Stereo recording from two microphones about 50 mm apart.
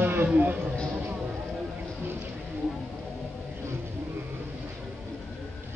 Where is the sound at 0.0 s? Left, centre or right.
Right.